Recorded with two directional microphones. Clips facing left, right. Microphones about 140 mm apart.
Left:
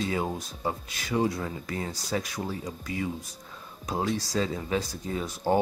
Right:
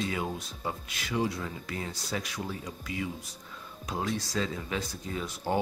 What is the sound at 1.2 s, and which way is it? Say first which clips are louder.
Speech: left 4 dB; 45° left (ahead or behind).